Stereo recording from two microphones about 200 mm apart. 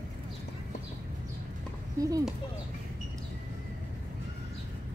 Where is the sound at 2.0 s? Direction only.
15° right (ahead or behind).